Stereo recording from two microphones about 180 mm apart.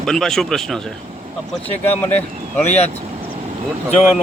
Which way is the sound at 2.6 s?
35° left (ahead or behind).